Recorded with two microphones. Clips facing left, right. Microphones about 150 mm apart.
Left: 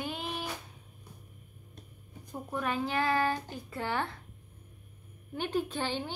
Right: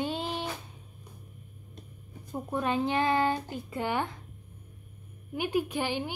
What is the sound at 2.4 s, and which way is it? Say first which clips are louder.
Speech: right 4 dB; 20° right (ahead or behind).